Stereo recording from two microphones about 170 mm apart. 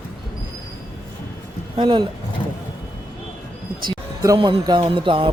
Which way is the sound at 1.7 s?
30° right (ahead or behind).